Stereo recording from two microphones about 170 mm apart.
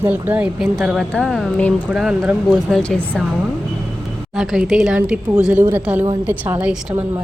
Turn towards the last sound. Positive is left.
turn(degrees=-5)  # may be behind; listen again after turning